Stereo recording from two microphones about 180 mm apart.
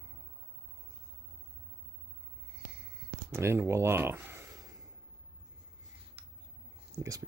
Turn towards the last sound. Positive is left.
turn(degrees=-20)  # may be behind; listen again after turning